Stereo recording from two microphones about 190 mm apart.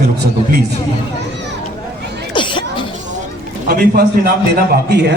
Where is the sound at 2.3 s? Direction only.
25° left (ahead or behind).